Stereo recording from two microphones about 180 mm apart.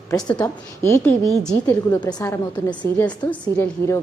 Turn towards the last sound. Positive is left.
turn(degrees=10)  # may be behind; listen again after turning